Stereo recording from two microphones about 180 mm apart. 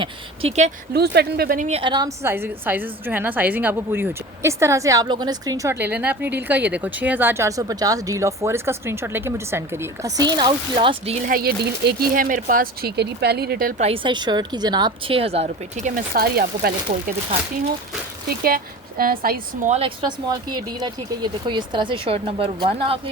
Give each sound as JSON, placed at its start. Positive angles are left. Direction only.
{"t": 0.0, "sound": "speech", "side_deg": -35}
{"t": 0.9, "sound": "speech", "side_deg": -65}
{"t": 1.8, "sound": "speech", "side_deg": -25}
{"t": 10.3, "sound": "speech", "side_deg": -25}
{"t": 11.3, "sound": "speech", "side_deg": -55}
{"t": 13.8, "sound": "speech", "side_deg": -30}
{"t": 15.4, "sound": "speech", "side_deg": -45}
{"t": 18.3, "sound": "speech", "side_deg": -55}
{"t": 19.7, "sound": "speech", "side_deg": -30}